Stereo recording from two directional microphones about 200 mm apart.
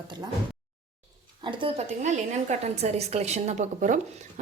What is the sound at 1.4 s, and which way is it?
A woman's voice, 30° right (ahead or behind).